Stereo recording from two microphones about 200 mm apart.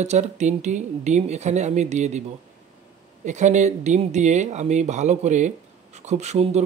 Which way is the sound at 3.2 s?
35° right (ahead or behind).